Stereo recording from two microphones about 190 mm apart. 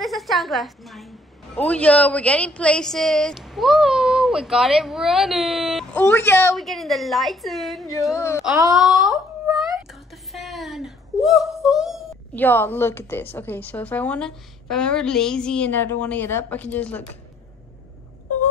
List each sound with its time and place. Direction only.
0.0 s a woman's voice: centre (ahead or behind)
6.5 s a woman's voice: centre (ahead or behind)
8.1 s a woman's voice: 15° left (ahead or behind)
8.7 s wail: centre (ahead or behind)
12.4 s a woman's voice: 10° left (ahead or behind)